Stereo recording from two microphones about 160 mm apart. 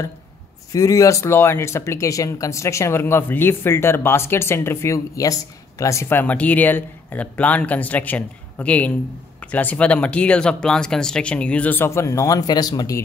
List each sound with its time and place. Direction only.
0.7 s speech: 20° left (ahead or behind)